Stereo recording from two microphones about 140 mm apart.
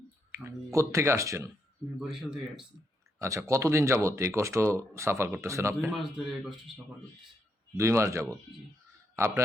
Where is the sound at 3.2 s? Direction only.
20° right (ahead or behind).